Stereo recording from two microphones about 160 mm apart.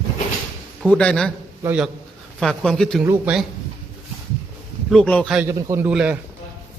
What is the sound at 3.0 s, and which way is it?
Speech, 15° right (ahead or behind).